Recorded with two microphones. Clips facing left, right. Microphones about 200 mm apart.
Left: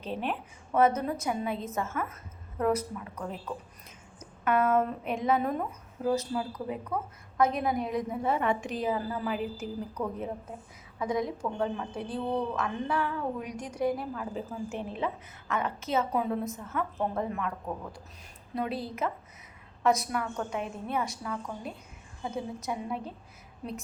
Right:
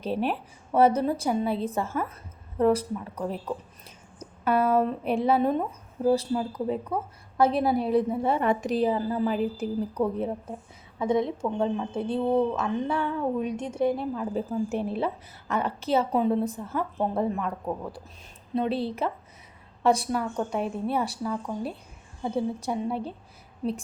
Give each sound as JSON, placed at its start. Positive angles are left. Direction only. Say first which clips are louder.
{"t": 0.0, "sound": "a woman's voice", "louder": "right 6 dB", "side_deg": -35}
{"t": 14.3, "sound": "a woman's voice", "louder": "right 7 dB", "side_deg": -40}
{"t": 18.5, "sound": "a woman's voice", "louder": "right 6 dB", "side_deg": -25}